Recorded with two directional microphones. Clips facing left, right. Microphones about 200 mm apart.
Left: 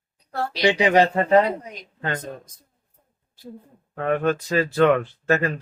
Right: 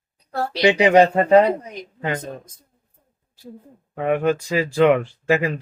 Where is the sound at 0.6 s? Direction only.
20° right (ahead or behind).